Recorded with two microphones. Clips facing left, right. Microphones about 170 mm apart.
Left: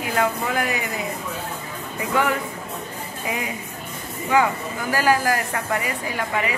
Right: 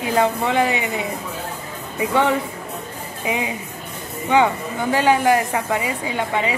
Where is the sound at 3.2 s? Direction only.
20° right (ahead or behind).